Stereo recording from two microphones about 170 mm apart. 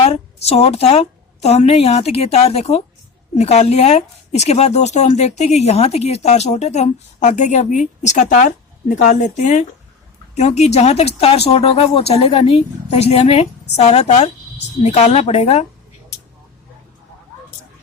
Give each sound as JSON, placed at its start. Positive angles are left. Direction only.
{"t": 0.0, "sound": "a woman's voice", "side_deg": 35}